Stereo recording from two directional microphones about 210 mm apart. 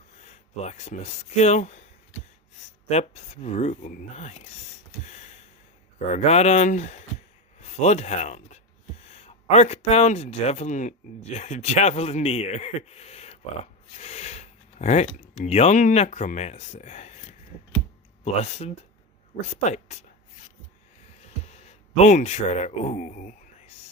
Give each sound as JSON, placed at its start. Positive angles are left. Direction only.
{"t": 0.2, "sound": "speech", "side_deg": 35}
{"t": 2.9, "sound": "speech", "side_deg": 30}
{"t": 5.0, "sound": "a sound", "side_deg": 35}
{"t": 6.1, "sound": "speech", "side_deg": 30}
{"t": 18.3, "sound": "speech", "side_deg": 30}
{"t": 21.4, "sound": "speech", "side_deg": 30}